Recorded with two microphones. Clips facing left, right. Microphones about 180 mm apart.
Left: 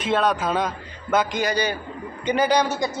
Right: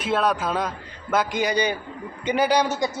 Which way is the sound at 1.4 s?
15° right (ahead or behind).